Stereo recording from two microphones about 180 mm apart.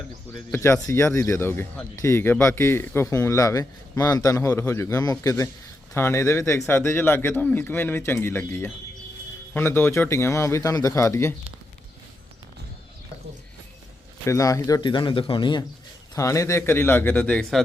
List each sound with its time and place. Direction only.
0.3 s speech: 10° left (ahead or behind)
14.3 s speech: 15° left (ahead or behind)